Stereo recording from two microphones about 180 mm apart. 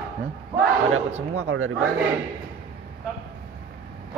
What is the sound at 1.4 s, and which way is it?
Speech, 90° right.